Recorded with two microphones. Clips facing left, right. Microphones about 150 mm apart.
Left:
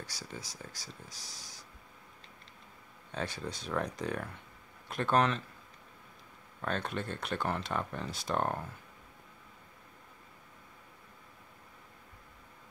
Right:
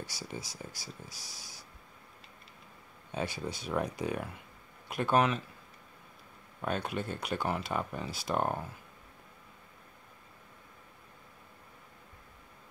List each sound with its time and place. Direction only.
0.0 s speech: 10° right (ahead or behind)
3.1 s speech: 10° right (ahead or behind)
6.6 s speech: 10° right (ahead or behind)